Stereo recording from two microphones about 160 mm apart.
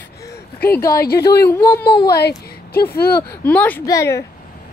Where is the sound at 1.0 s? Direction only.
75° left (ahead or behind).